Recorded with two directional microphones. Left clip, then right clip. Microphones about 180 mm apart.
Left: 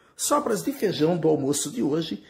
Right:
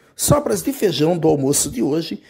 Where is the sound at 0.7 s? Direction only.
60° right (ahead or behind).